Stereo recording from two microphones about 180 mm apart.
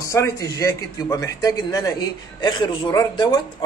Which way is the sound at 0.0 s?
15° left (ahead or behind).